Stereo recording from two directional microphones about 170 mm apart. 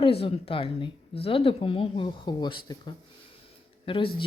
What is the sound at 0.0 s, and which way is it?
A woman's voice, 35° left (ahead or behind).